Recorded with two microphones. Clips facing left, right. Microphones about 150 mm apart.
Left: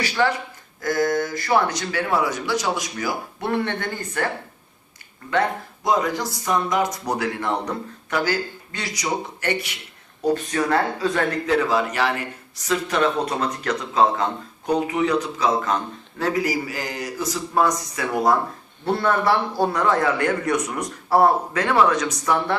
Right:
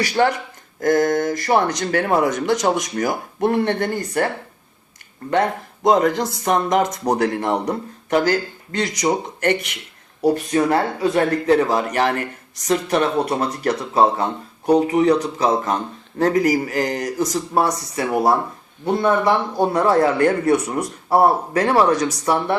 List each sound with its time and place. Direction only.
0.0 s a man's voice: 40° right (ahead or behind)
5.8 s speech: 55° right (ahead or behind); by 7.8 s 40° right (ahead or behind)
8.8 s speech: 45° right (ahead or behind)
10.5 s a man's voice: 25° right (ahead or behind)
18.9 s speech: 20° right (ahead or behind)
19.8 s a man's voice: 35° right (ahead or behind)